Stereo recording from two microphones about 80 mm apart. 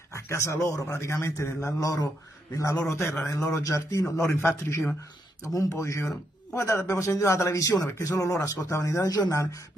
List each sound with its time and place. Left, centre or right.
0.1 s a man's voice: left
3.5 s speech: left
4.3 s a man's voice: left